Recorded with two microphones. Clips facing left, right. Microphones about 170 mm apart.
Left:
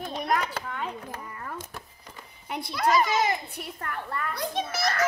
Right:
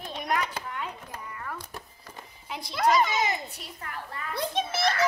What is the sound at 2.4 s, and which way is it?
A woman's voice, 55° left (ahead or behind).